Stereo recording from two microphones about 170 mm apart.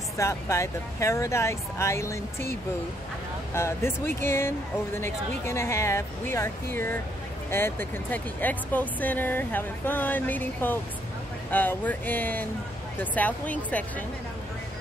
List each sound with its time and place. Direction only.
0.2 s speech: 15° left (ahead or behind)
3.5 s speech: 15° left (ahead or behind)